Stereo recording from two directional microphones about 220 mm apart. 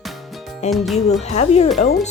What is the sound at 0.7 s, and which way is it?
Speech, centre (ahead or behind).